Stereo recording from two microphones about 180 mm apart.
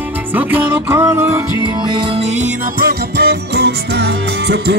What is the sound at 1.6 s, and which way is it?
Music, 25° right (ahead or behind).